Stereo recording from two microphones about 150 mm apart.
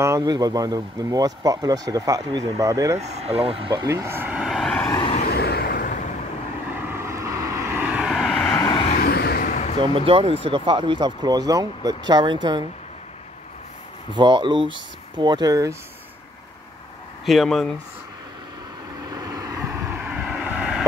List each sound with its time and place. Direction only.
0.0 s speech: 25° right (ahead or behind)
3.0 s speech: 45° right (ahead or behind)
3.8 s speech: 20° right (ahead or behind); by 4.7 s centre (ahead or behind)
5.2 s vehicle: 90° left; by 6.0 s 65° left (ahead or behind)
6.9 s vehicle: 20° right (ahead or behind); by 8.5 s centre (ahead or behind)
8.5 s vehicle: 25° left (ahead or behind)
9.0 s vehicle: 90° left; by 9.8 s 55° left (ahead or behind)
9.8 s speech: 35° right (ahead or behind)
14.1 s speech: 30° right (ahead or behind)
17.3 s speech: centre (ahead or behind)
19.0 s vehicle: 25° right (ahead or behind); by 20.8 s 5° right (ahead or behind)